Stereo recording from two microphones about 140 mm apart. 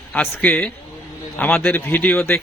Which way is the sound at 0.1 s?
10° left (ahead or behind).